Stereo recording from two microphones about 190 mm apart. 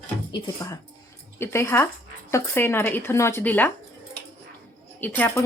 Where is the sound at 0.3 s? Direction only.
20° left (ahead or behind).